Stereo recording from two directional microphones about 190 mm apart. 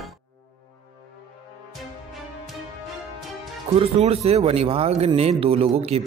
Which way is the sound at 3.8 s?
30° right (ahead or behind).